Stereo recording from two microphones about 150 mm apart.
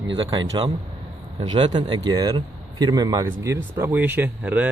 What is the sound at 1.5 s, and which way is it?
Speech, 30° right (ahead or behind).